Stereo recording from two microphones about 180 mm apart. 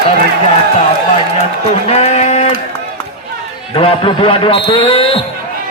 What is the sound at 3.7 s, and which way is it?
A man's voice, 30° left (ahead or behind).